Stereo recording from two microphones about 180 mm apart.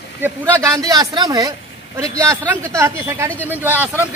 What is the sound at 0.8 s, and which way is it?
Speech, 20° right (ahead or behind).